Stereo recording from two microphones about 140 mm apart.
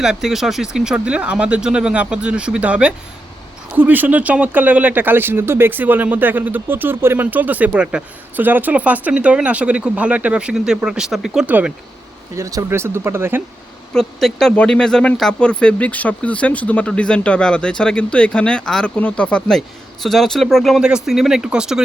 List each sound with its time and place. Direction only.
0.0 s speech: 5° right (ahead or behind)
12.4 s speech: 25° right (ahead or behind)
13.9 s speech: 5° left (ahead or behind)